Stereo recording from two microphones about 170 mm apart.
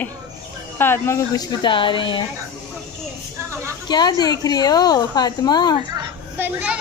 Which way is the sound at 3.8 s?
25° left (ahead or behind).